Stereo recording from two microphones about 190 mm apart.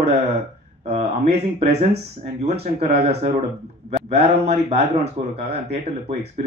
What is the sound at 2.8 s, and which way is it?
Speech, 35° right (ahead or behind).